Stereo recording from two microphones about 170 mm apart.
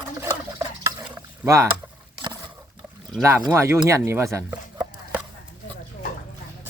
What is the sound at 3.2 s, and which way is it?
Speech, 15° right (ahead or behind).